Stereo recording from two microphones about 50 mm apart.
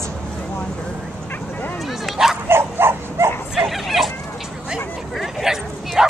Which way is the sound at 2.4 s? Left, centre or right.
Right.